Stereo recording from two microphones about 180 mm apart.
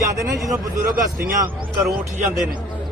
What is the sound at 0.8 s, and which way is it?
Speech, 50° right (ahead or behind).